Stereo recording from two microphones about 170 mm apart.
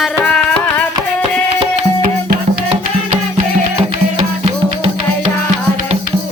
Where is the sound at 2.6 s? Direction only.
40° right (ahead or behind).